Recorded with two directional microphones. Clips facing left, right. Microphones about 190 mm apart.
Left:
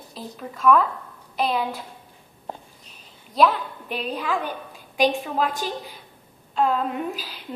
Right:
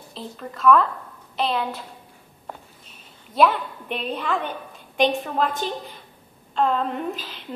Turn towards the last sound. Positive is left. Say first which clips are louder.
# even
turn(degrees=5)  # may be behind; listen again after turning